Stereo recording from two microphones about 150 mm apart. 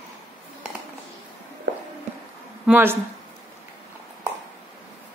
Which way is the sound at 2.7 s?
15° right (ahead or behind).